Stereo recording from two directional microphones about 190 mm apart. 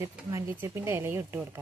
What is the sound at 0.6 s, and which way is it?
Cutlery, 15° right (ahead or behind).